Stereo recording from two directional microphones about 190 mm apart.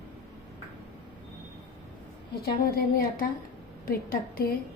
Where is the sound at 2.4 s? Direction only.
50° left (ahead or behind).